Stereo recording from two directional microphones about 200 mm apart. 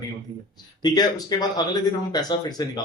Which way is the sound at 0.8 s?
20° left (ahead or behind).